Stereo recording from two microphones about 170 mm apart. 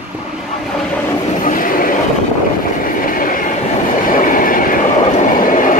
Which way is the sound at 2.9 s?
55° left (ahead or behind).